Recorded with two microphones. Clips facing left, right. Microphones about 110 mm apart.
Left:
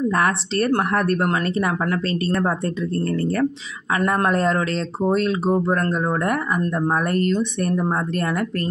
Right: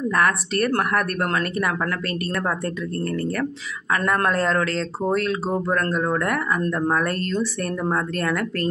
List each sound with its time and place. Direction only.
0.1 s speech: 25° left (ahead or behind)